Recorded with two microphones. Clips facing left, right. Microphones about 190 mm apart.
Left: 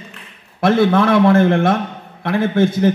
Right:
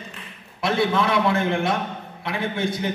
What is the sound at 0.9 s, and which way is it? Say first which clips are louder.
Speech: left 9 dB; 55° left (ahead or behind).